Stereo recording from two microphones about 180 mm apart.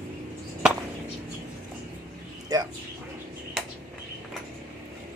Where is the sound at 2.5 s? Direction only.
20° right (ahead or behind).